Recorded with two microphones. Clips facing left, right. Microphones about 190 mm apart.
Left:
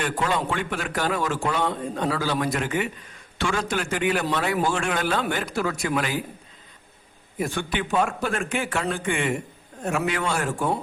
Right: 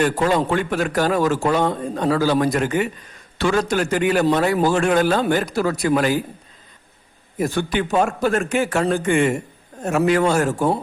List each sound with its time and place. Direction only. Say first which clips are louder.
0.0 s a man's voice: right 7 dB; 40° right (ahead or behind)
7.3 s a man's voice: right 6 dB; 40° right (ahead or behind)